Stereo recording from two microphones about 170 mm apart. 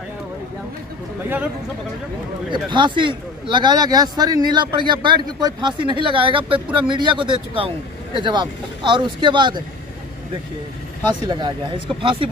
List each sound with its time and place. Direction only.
2.5 s speech: 30° right (ahead or behind)
11.2 s speech: 25° right (ahead or behind)